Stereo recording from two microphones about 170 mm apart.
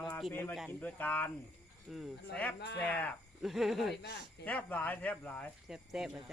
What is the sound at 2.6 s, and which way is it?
Speech, 85° left.